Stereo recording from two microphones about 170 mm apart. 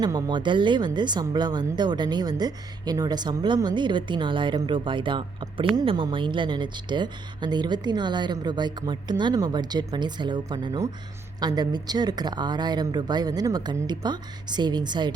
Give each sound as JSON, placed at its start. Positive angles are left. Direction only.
{"t": 0.0, "sound": "a woman's voice", "side_deg": -25}